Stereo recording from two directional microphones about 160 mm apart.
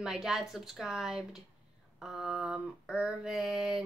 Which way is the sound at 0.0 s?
5° right (ahead or behind).